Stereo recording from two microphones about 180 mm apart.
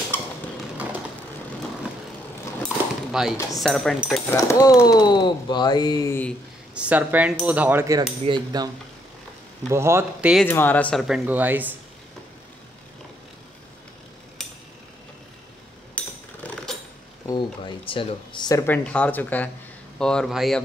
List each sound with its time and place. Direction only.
0.1 s a sound: 10° left (ahead or behind)
2.6 s a sound: centre (ahead or behind)
3.6 s speech: centre (ahead or behind)
4.3 s speech: 20° left (ahead or behind)
6.7 s speech: 5° right (ahead or behind)
8.3 s cutlery: 20° right (ahead or behind)
9.7 s speech: 15° right (ahead or behind)
10.4 s speech: 10° left (ahead or behind); by 11.7 s 10° right (ahead or behind)
16.0 s a sound: 10° left (ahead or behind)
16.4 s sewing machine: 10° left (ahead or behind)
17.3 s speech: 25° left (ahead or behind); by 20.6 s centre (ahead or behind)